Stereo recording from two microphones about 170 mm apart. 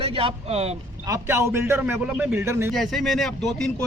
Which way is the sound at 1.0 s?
15° right (ahead or behind).